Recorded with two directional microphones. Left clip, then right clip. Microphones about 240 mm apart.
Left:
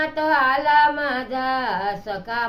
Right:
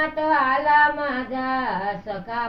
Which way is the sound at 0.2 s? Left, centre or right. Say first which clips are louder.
Left 2 dB; centre.